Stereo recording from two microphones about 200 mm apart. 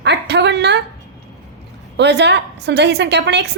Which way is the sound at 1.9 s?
60° right (ahead or behind).